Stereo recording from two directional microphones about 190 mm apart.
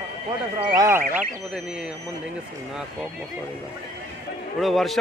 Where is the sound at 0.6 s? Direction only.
20° right (ahead or behind).